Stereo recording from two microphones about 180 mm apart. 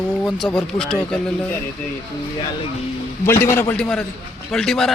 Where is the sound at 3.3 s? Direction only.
15° left (ahead or behind).